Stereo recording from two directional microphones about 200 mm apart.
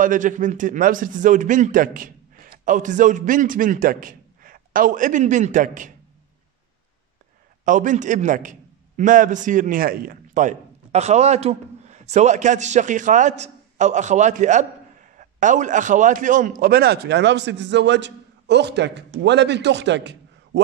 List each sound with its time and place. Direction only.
0.0 s a man's voice: 40° right (ahead or behind)
7.6 s a man's voice: 40° right (ahead or behind); by 20.6 s 60° right (ahead or behind)